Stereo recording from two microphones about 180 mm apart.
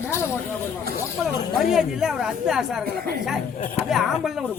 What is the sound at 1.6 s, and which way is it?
Speech, centre (ahead or behind).